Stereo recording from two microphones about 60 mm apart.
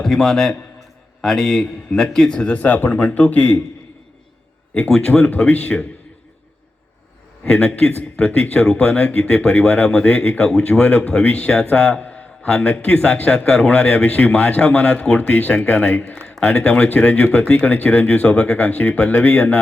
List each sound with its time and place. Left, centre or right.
0.0 s a man's voice: centre; by 3.6 s left
4.7 s speech: centre
7.4 s a man's voice: left